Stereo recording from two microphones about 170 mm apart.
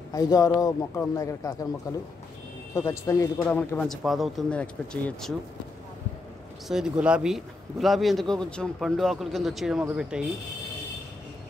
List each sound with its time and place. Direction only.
0.1 s a man's voice: 20° left (ahead or behind)
2.7 s speech: 15° left (ahead or behind)
6.7 s speech: 5° right (ahead or behind)